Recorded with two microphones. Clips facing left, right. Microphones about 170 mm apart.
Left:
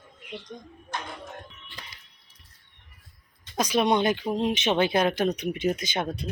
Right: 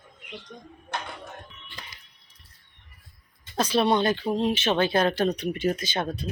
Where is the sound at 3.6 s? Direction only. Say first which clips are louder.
Right 1 dB; 15° left (ahead or behind).